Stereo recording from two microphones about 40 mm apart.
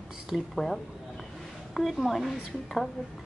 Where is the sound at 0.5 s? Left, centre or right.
Centre.